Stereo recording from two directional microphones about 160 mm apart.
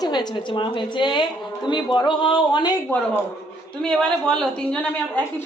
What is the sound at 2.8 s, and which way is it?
A man's voice, 10° left (ahead or behind).